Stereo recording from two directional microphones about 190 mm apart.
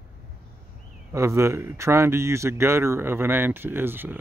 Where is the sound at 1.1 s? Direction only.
15° right (ahead or behind).